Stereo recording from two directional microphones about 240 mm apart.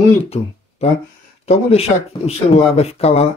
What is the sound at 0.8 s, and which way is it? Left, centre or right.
Speech, left.